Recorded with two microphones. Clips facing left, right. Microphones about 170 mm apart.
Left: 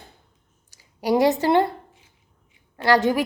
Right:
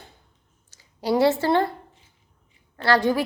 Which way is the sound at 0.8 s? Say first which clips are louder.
Left 1 dB; 15° left (ahead or behind).